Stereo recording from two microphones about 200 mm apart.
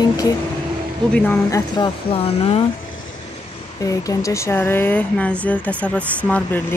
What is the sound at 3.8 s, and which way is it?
Speech, 15° left (ahead or behind).